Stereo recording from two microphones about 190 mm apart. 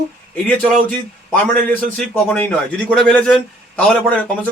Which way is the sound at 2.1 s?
10° left (ahead or behind).